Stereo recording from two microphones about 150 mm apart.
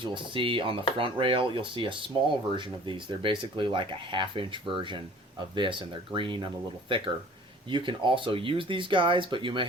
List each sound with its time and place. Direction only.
0.0 s speech: 35° right (ahead or behind)